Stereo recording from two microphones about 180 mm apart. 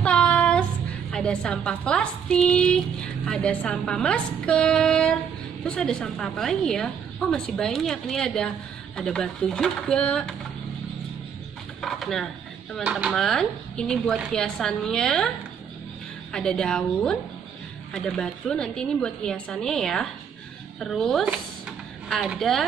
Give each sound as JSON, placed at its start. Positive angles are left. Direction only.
{"t": 0.0, "sound": "child singing", "side_deg": 5}
{"t": 1.1, "sound": "a woman's voice", "side_deg": 5}
{"t": 11.8, "sound": "a woman's voice", "side_deg": 0}